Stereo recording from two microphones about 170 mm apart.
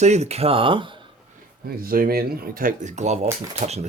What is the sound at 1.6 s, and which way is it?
Speech, 60° right (ahead or behind).